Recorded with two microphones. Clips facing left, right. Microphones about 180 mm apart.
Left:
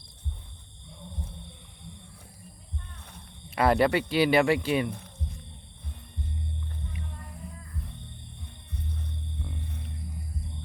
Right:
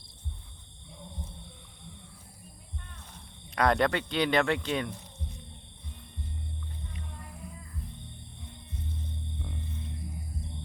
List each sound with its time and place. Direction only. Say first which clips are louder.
3.5 s speech: left 3 dB; 5° left (ahead or behind)
8.7 s music: left 2 dB; 65° left (ahead or behind)